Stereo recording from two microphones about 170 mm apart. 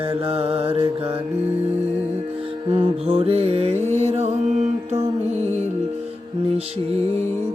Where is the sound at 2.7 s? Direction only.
35° right (ahead or behind).